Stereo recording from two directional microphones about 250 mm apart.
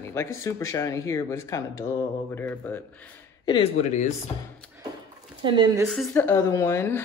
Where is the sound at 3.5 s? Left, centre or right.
Left.